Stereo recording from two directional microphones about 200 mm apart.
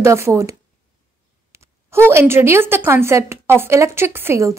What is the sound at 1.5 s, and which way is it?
A woman's voice, 15° right (ahead or behind).